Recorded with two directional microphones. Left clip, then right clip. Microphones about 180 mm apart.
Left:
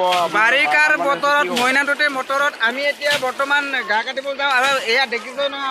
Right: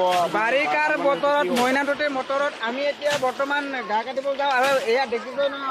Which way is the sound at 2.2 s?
5° right (ahead or behind).